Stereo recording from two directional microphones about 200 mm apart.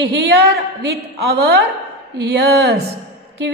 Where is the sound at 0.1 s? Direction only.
55° right (ahead or behind).